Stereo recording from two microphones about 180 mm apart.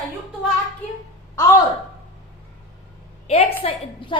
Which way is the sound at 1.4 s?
15° left (ahead or behind).